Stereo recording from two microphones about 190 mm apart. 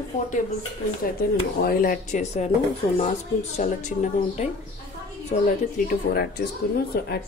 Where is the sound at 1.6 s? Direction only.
50° left (ahead or behind).